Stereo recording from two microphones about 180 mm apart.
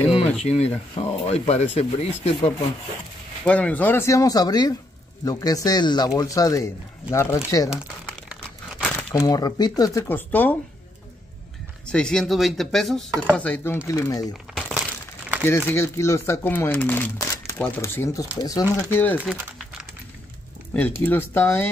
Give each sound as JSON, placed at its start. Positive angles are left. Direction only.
{"t": 0.4, "sound": "speech", "side_deg": 35}
{"t": 3.4, "sound": "a man's voice", "side_deg": 10}
{"t": 8.3, "sound": "crumpling", "side_deg": -5}
{"t": 8.9, "sound": "speech", "side_deg": 15}
{"t": 11.8, "sound": "chopping", "side_deg": 5}
{"t": 13.8, "sound": "a man's voice", "side_deg": 20}
{"t": 14.5, "sound": "crumpling", "side_deg": -5}
{"t": 15.7, "sound": "speech", "side_deg": 15}
{"t": 20.7, "sound": "speech", "side_deg": 10}